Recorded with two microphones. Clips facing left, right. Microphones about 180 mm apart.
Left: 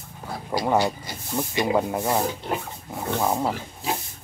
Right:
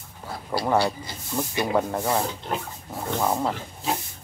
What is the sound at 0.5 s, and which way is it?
Speech, 15° left (ahead or behind).